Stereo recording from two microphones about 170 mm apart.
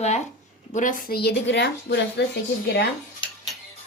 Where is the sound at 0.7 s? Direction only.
50° left (ahead or behind); by 2.8 s 85° left.